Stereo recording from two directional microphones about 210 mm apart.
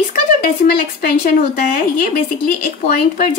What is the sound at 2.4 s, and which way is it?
Speech, 40° left (ahead or behind).